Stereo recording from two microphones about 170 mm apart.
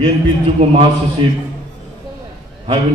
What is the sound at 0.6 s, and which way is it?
Speech, 35° right (ahead or behind).